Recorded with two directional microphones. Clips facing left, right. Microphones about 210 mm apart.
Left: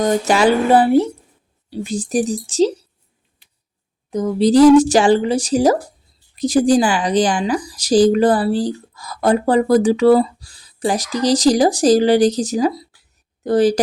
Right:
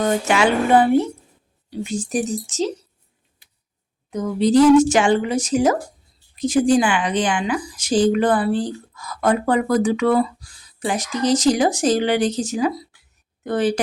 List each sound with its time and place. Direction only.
0.0 s speech: 35° left (ahead or behind)
4.1 s speech: 35° left (ahead or behind)